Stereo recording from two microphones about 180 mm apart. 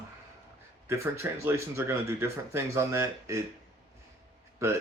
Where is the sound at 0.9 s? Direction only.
15° right (ahead or behind).